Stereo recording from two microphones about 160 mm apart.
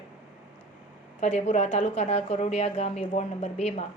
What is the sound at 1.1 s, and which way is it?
A woman's voice, 45° left (ahead or behind).